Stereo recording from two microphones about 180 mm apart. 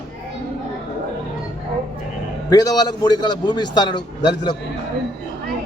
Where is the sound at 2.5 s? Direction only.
20° left (ahead or behind).